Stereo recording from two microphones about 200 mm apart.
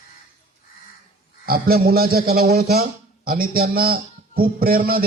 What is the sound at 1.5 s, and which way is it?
A man's voice, 50° right (ahead or behind).